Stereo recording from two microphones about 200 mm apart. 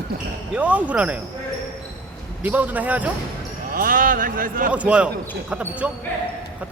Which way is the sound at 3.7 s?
45° right (ahead or behind).